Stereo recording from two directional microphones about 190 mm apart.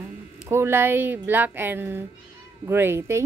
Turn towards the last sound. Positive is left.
turn(degrees=-15)  # may be behind; listen again after turning